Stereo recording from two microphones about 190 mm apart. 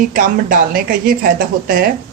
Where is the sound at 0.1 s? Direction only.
45° right (ahead or behind).